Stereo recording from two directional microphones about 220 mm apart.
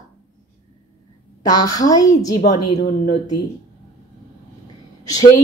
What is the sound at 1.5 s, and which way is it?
Speech, 15° left (ahead or behind).